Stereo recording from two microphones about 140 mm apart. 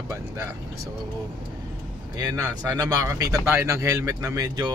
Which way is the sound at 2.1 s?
25° right (ahead or behind).